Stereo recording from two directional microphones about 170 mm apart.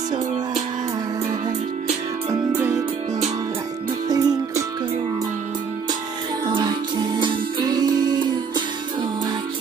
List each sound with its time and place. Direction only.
2.5 s music: 20° right (ahead or behind)
4.1 s music: 20° right (ahead or behind)
7.2 s music: 25° right (ahead or behind)